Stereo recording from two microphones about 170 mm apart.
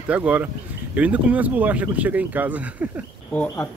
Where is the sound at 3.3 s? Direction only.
5° left (ahead or behind).